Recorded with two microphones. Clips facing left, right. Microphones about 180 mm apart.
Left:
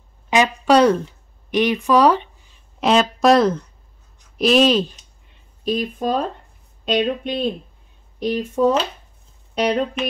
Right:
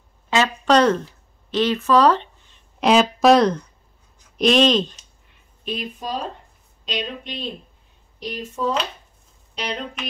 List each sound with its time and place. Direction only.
0.3 s a sound: 15° left (ahead or behind)
1.5 s speech: 15° left (ahead or behind)
2.8 s speech: centre (ahead or behind)
5.6 s speech: 40° left (ahead or behind)